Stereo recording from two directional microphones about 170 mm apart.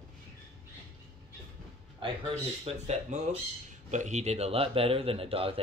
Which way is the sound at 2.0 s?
35° right (ahead or behind).